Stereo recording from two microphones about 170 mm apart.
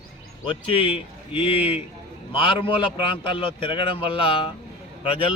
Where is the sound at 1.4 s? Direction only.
10° right (ahead or behind).